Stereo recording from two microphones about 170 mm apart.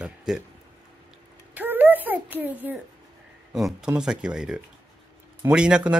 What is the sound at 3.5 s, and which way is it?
Speech, 5° right (ahead or behind).